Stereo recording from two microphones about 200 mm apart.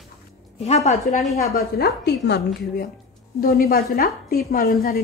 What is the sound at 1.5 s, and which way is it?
A woman's voice, 50° left (ahead or behind).